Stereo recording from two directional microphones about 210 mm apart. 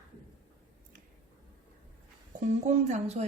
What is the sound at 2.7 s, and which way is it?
Speech, 35° right (ahead or behind).